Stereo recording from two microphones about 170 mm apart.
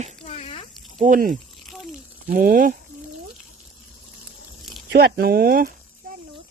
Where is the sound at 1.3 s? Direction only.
Centre (ahead or behind).